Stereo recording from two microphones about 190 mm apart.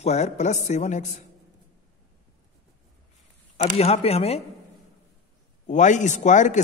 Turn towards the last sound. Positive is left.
turn(degrees=40)  # may be behind; listen again after turning